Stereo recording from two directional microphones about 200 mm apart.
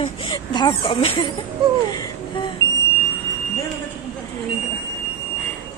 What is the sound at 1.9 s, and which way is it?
Music, 20° left (ahead or behind).